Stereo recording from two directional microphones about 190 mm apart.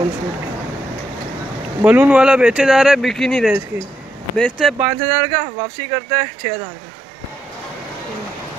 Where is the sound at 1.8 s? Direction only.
5° right (ahead or behind).